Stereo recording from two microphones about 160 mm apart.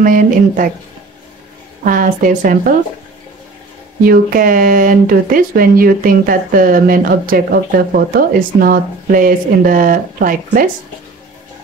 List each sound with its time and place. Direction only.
0.0 s speech: 60° right (ahead or behind)
1.9 s speech: 60° right (ahead or behind)
4.0 s speech: 65° right (ahead or behind)